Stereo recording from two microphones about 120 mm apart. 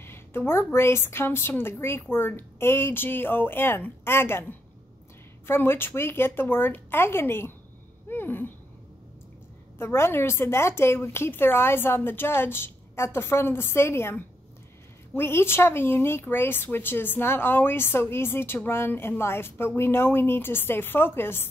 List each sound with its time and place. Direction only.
0.0 s a woman's voice: 20° left (ahead or behind)
8.1 s a sound: 15° left (ahead or behind)
9.8 s a woman's voice: 20° left (ahead or behind)